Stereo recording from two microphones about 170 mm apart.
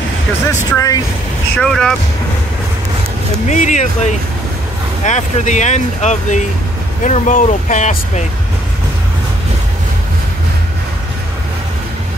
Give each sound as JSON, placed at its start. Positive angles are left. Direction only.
{"t": 0.5, "sound": "speech", "side_deg": 20}
{"t": 1.6, "sound": "speech", "side_deg": 5}
{"t": 3.4, "sound": "speech", "side_deg": 45}
{"t": 5.0, "sound": "speech", "side_deg": 45}